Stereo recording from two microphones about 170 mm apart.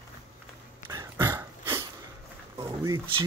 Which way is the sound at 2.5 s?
20° right (ahead or behind).